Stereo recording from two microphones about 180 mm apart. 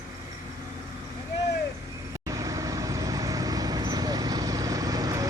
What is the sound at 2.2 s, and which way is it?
Vehicle, 20° right (ahead or behind).